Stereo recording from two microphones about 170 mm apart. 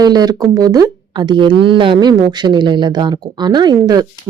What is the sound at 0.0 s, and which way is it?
Speech, 25° right (ahead or behind).